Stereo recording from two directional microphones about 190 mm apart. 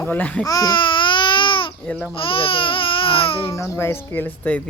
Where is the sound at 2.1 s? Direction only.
30° left (ahead or behind).